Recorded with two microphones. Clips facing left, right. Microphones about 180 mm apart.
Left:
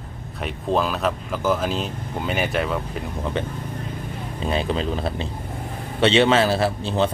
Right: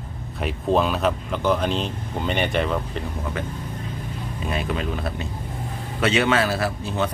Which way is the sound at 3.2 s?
25° left (ahead or behind).